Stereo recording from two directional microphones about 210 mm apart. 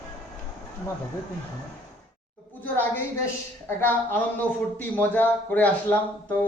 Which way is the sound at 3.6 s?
10° left (ahead or behind).